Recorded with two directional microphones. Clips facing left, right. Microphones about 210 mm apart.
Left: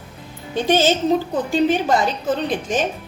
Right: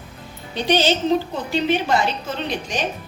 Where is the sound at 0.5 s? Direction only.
45° left (ahead or behind).